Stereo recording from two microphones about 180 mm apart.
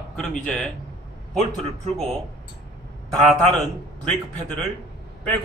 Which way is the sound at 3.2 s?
Centre (ahead or behind).